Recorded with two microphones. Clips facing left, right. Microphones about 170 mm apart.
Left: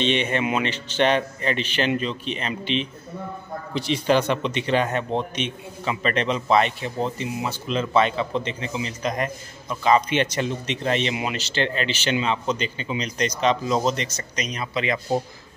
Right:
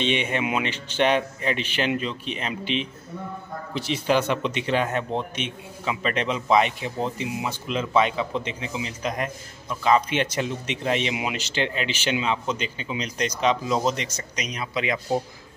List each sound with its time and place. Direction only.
0.0 s a man's voice: 10° right (ahead or behind)